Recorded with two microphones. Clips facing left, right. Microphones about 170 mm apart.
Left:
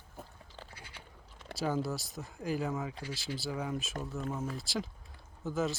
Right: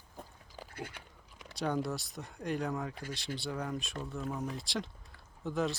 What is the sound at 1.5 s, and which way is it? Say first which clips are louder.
Speech: even; 5° left (ahead or behind).